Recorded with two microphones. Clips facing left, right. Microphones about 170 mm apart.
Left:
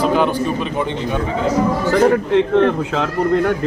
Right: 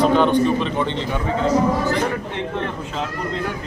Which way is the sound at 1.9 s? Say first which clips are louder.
Left 10 dB; 50° left (ahead or behind).